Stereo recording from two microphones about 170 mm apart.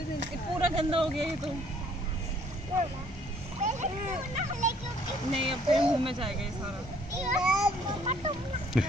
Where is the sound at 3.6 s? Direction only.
45° right (ahead or behind).